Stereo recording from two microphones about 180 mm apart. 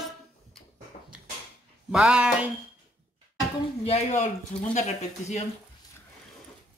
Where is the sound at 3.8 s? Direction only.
40° left (ahead or behind).